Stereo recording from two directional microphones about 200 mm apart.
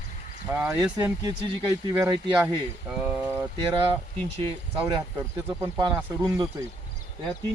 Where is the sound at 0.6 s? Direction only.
15° right (ahead or behind).